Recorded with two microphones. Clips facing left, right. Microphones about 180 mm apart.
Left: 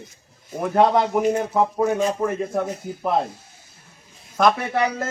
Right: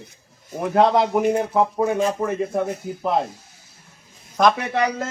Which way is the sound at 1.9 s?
Centre (ahead or behind).